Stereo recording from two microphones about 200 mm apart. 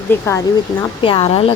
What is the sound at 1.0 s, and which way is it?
Speech, 25° left (ahead or behind).